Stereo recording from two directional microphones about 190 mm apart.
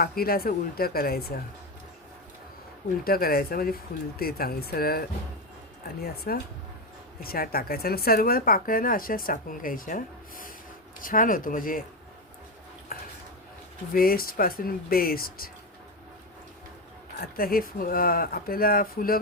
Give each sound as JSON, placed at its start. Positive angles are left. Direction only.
{"t": 0.0, "sound": "speech", "side_deg": 50}
{"t": 3.0, "sound": "speech", "side_deg": 50}
{"t": 12.9, "sound": "dishes", "side_deg": 50}
{"t": 13.9, "sound": "speech", "side_deg": 50}
{"t": 17.2, "sound": "speech", "side_deg": 50}